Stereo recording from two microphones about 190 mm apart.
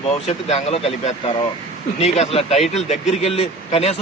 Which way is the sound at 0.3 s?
35° left (ahead or behind).